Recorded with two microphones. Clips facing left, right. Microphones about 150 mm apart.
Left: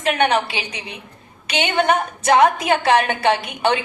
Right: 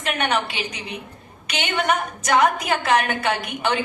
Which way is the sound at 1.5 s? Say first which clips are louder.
Left 4 dB; 30° left (ahead or behind).